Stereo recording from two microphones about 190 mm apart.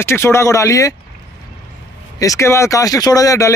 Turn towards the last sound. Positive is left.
turn(degrees=15)  # may be behind; listen again after turning